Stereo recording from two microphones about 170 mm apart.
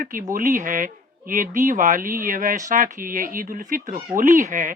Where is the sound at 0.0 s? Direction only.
55° right (ahead or behind).